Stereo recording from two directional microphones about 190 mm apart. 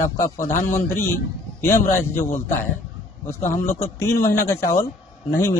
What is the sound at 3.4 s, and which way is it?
A man's voice, 15° left (ahead or behind).